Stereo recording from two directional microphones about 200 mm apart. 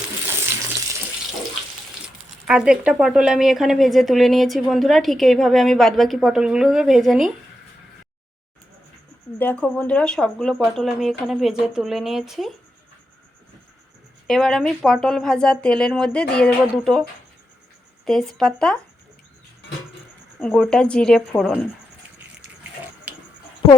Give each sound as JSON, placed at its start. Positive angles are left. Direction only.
{"t": 2.5, "sound": "a woman's voice", "side_deg": -5}
{"t": 9.4, "sound": "a woman's voice", "side_deg": 10}
{"t": 14.3, "sound": "a woman's voice", "side_deg": 0}
{"t": 18.0, "sound": "a woman's voice", "side_deg": 0}
{"t": 20.4, "sound": "a woman's voice", "side_deg": 5}